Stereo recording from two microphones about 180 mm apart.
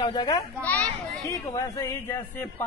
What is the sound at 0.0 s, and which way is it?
Speech, 25° left (ahead or behind).